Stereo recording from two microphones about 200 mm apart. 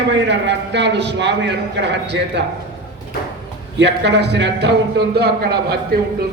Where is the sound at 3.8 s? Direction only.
60° right (ahead or behind).